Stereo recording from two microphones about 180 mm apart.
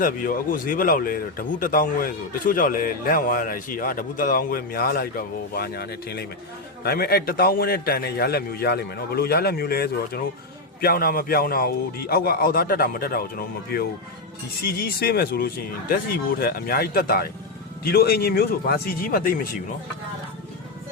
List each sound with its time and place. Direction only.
0.0 s a man's voice: 50° left (ahead or behind)